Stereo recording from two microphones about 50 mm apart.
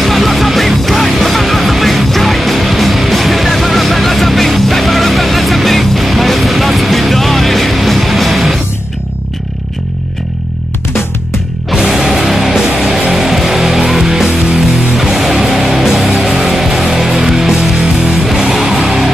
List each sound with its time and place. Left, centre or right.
0.0 s music: centre
11.7 s music: centre